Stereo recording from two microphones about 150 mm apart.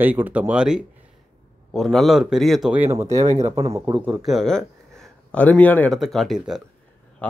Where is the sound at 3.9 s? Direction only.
10° right (ahead or behind).